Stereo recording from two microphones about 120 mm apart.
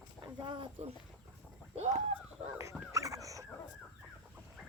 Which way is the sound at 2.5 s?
25° right (ahead or behind).